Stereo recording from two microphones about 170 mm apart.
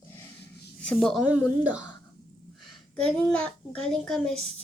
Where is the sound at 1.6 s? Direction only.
10° right (ahead or behind).